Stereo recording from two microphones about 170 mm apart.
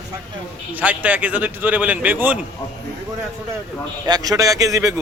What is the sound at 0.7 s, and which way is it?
A man's voice, 10° right (ahead or behind).